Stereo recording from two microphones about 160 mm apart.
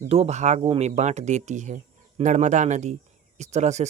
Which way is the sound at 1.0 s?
45° right (ahead or behind).